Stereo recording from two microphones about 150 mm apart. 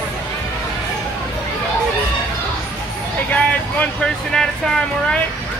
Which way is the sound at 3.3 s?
10° left (ahead or behind).